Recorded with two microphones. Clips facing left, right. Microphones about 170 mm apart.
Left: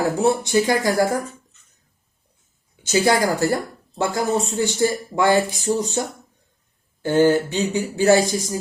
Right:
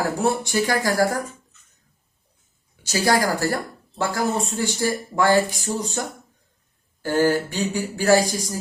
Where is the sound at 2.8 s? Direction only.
20° left (ahead or behind).